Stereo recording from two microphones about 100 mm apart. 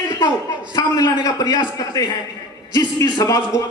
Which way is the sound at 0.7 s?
45° left (ahead or behind).